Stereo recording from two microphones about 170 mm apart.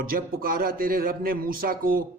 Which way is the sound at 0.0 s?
55° right (ahead or behind).